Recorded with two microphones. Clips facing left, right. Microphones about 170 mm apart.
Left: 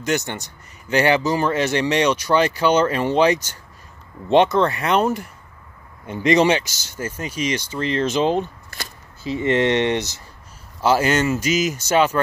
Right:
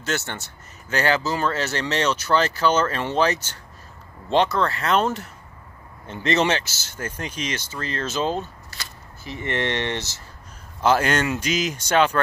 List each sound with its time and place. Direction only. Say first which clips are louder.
0.0 s speech: left 5 dB; 15° left (ahead or behind)